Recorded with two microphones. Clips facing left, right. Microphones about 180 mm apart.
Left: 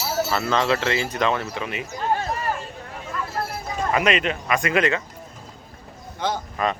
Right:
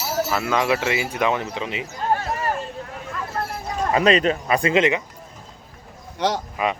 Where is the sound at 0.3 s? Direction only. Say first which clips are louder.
Even; 10° right (ahead or behind).